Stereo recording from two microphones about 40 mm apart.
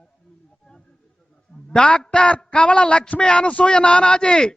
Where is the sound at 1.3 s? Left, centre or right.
Centre.